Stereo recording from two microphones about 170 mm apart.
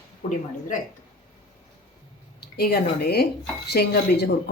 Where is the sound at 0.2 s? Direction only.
40° left (ahead or behind).